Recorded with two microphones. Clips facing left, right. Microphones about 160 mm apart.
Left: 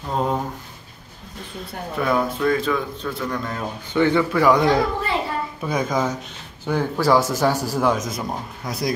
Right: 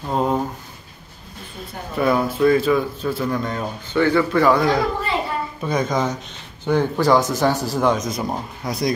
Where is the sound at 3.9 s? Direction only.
15° left (ahead or behind).